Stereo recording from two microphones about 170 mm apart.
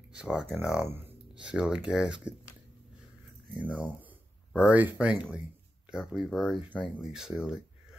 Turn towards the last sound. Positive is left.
turn(degrees=-5)  # may be behind; listen again after turning